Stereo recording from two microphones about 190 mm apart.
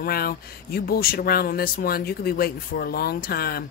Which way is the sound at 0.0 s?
50° left (ahead or behind).